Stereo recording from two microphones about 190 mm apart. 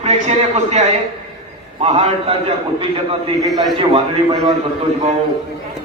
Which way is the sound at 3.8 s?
30° right (ahead or behind).